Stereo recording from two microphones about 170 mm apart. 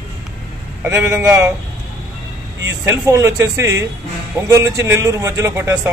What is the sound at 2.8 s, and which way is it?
A man's voice, 15° right (ahead or behind).